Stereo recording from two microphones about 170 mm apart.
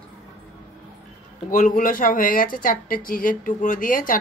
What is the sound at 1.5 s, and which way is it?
Speech, 50° left (ahead or behind).